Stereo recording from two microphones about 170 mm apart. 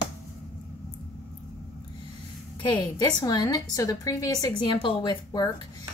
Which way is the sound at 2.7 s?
25° left (ahead or behind).